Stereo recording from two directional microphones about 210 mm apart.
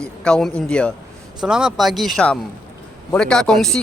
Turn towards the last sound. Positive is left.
turn(degrees=0)  # may be behind; listen again after turning